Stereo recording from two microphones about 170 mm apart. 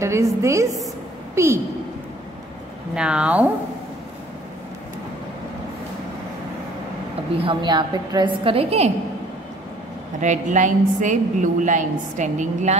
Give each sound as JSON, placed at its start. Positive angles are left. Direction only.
{"t": 0.0, "sound": "a woman's voice", "side_deg": -15}
{"t": 2.9, "sound": "speech", "side_deg": -5}
{"t": 7.4, "sound": "a woman's voice", "side_deg": -25}
{"t": 10.2, "sound": "a woman's voice", "side_deg": -45}